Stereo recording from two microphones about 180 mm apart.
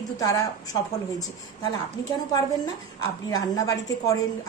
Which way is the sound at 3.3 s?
20° left (ahead or behind).